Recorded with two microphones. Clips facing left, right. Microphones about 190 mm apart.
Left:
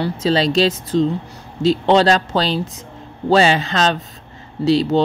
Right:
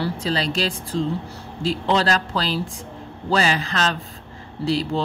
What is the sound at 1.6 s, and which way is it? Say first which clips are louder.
Speech: left 8 dB; 75° left (ahead or behind).